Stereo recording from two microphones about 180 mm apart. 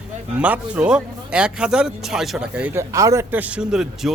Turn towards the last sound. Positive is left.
turn(degrees=-5)  # may be behind; listen again after turning